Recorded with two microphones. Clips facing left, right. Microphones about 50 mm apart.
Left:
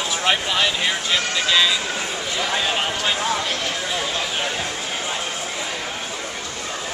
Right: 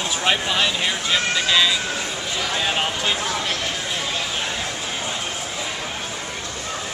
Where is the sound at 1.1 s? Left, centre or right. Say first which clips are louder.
Right 2 dB; centre.